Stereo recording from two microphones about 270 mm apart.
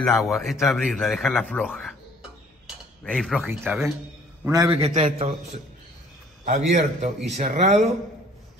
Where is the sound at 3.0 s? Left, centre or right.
Centre; by 7.9 s right.